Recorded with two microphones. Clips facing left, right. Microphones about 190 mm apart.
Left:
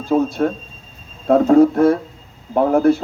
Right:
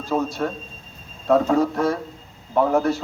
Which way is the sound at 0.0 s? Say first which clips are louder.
Left 6 dB; 55° left (ahead or behind).